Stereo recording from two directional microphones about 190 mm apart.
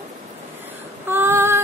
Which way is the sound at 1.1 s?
15° right (ahead or behind).